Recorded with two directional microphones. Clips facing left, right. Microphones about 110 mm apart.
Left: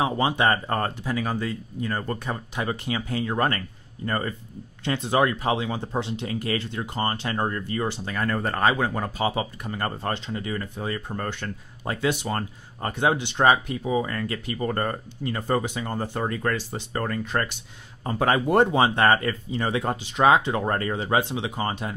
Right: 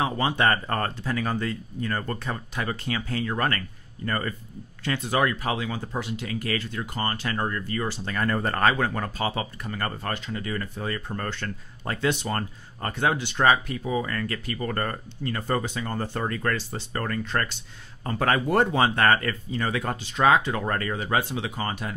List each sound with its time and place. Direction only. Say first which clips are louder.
0.0 s speech: left 1 dB; 15° left (ahead or behind)
8.0 s speech: even; 10° left (ahead or behind)
8.5 s speech: left 1 dB; 15° left (ahead or behind)